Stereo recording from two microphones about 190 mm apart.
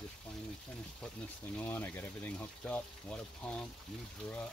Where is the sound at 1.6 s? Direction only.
10° left (ahead or behind).